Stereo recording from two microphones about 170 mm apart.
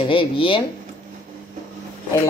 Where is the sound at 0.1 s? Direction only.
30° left (ahead or behind).